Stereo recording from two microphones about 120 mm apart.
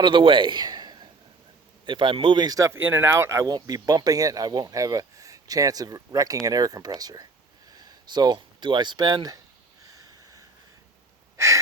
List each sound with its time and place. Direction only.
0.0 s a man's voice: 45° right (ahead or behind)
11.3 s wheeze: 25° right (ahead or behind)